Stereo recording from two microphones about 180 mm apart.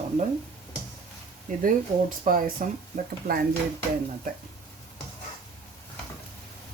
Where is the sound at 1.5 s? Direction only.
45° right (ahead or behind).